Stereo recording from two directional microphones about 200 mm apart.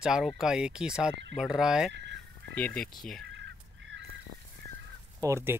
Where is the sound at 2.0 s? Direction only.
60° right (ahead or behind).